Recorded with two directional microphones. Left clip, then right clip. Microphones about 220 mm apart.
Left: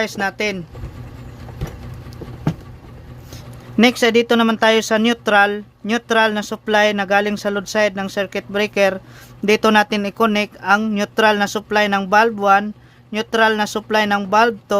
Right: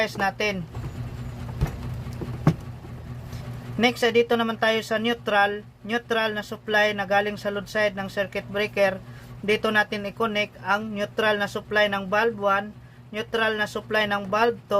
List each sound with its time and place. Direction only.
0.0 s speech: 40° left (ahead or behind)
3.8 s speech: 45° left (ahead or behind)